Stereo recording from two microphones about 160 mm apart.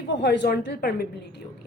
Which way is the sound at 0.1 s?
90° left.